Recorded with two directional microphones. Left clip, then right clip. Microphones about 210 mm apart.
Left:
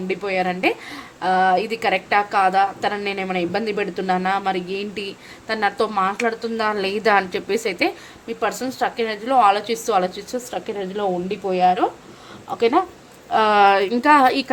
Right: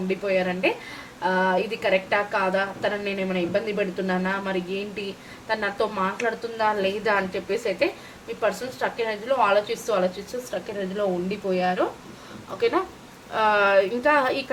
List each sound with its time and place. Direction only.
0.1 s a woman's voice: 50° left (ahead or behind)